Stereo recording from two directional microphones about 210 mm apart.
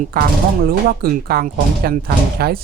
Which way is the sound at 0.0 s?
45° right (ahead or behind).